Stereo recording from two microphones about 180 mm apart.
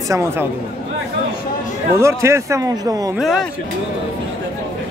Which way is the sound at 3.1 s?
Centre (ahead or behind).